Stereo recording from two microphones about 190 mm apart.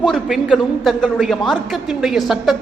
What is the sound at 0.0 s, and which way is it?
A man's voice, centre (ahead or behind).